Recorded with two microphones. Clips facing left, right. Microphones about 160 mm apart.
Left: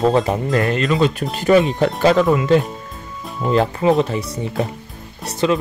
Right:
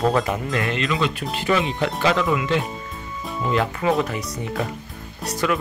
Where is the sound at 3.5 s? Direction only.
30° left (ahead or behind).